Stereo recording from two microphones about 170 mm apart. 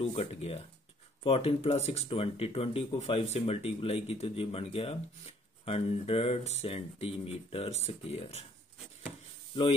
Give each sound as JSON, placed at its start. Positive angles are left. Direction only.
{"t": 0.0, "sound": "speech", "side_deg": 40}